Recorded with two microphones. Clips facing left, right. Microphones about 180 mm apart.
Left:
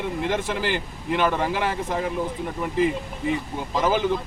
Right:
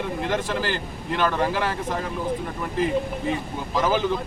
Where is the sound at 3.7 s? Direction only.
15° left (ahead or behind).